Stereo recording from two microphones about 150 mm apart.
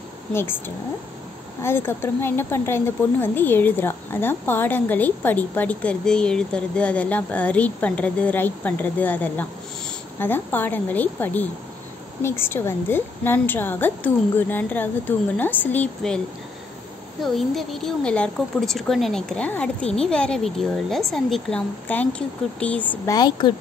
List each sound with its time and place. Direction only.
0.3 s a woman's voice: 15° left (ahead or behind)
1.6 s a woman's voice: 15° left (ahead or behind)
17.2 s a woman's voice: centre (ahead or behind)
23.0 s a woman's voice: 25° left (ahead or behind)